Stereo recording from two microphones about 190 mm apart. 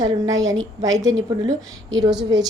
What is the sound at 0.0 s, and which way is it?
A woman's voice, 20° right (ahead or behind).